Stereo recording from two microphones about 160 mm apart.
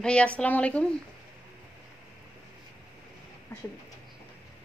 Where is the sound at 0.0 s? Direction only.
5° left (ahead or behind).